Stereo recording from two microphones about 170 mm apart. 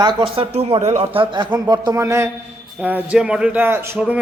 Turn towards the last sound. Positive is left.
turn(degrees=-10)  # may be behind; listen again after turning